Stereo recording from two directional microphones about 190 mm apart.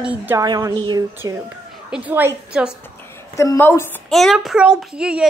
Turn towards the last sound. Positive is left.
turn(degrees=-5)  # may be behind; listen again after turning